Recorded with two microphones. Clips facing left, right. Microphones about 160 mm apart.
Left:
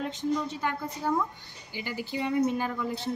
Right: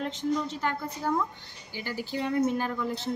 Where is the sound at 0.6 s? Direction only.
Centre (ahead or behind).